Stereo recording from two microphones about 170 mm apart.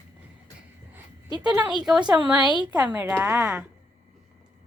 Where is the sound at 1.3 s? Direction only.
25° right (ahead or behind).